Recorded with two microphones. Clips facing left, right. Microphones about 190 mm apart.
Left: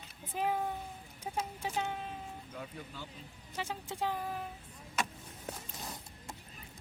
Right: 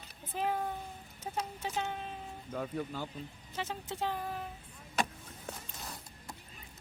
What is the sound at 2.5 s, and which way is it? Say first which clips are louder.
Speech: right 8 dB; 50° right (ahead or behind).